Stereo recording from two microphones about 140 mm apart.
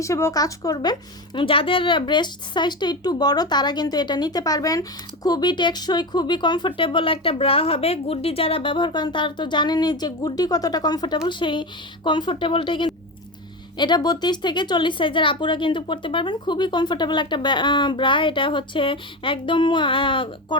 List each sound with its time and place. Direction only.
0.0 s a woman's voice: 20° left (ahead or behind); by 20.6 s 35° left (ahead or behind)